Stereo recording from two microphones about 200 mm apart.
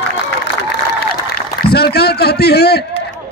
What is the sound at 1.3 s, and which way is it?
A man's voice, 50° left (ahead or behind).